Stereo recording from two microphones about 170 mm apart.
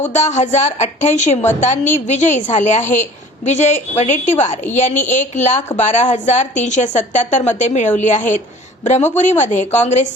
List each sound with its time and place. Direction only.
0.1 s a woman's voice: 45° left (ahead or behind)